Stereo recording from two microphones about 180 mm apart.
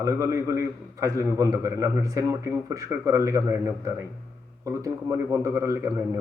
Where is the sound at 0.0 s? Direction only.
15° right (ahead or behind).